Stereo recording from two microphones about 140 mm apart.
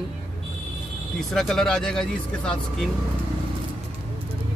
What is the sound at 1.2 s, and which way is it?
Speech, centre (ahead or behind).